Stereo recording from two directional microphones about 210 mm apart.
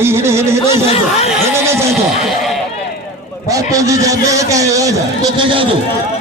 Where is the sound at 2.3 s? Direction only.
Centre (ahead or behind).